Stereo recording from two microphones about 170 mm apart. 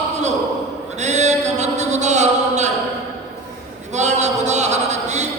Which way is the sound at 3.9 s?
45° right (ahead or behind).